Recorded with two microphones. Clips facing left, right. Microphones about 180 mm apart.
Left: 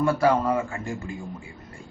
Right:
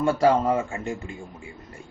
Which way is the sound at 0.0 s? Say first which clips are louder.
Right 1 dB; 30° right (ahead or behind).